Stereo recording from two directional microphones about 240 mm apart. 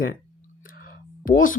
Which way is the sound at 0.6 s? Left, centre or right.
Left.